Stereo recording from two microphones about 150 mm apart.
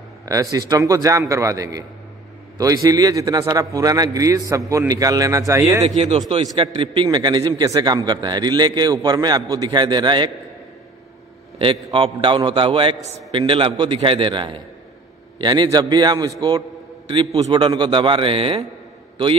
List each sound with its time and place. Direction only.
0.2 s a man's voice: 20° right (ahead or behind)
5.9 s speech: 45° right (ahead or behind)
6.4 s a man's voice: 30° right (ahead or behind)
11.5 s a man's voice: 35° right (ahead or behind)
17.1 s a man's voice: 35° right (ahead or behind)